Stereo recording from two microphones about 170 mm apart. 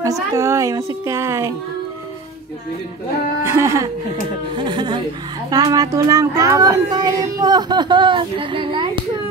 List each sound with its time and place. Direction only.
0.0 s a woman's voice: 20° right (ahead or behind)
3.4 s a woman's voice: 15° right (ahead or behind)
4.6 s speech: 25° right (ahead or behind)